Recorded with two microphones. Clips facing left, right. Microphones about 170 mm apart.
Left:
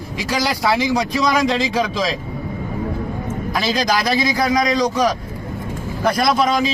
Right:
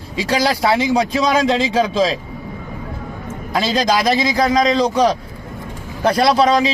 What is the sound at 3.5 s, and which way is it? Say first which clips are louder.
Speech: right 3 dB; 25° right (ahead or behind).